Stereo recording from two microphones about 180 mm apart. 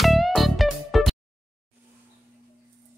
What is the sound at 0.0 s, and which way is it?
Music, centre (ahead or behind).